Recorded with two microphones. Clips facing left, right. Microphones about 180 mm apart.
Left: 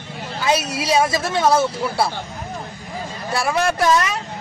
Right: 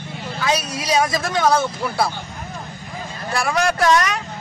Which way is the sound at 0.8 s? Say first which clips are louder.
Left 1 dB; 25° left (ahead or behind).